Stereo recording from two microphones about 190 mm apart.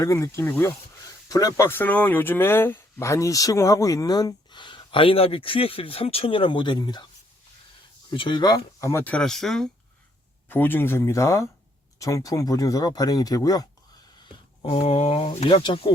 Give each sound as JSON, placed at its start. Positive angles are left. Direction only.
{"t": 0.0, "sound": "speech", "side_deg": 15}
{"t": 8.1, "sound": "speech", "side_deg": 25}